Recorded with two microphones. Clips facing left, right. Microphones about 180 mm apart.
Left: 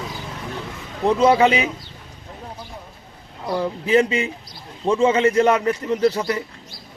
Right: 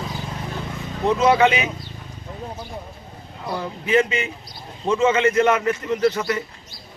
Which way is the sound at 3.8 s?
35° left (ahead or behind).